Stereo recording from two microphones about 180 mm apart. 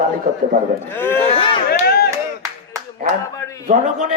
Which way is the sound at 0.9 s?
10° left (ahead or behind).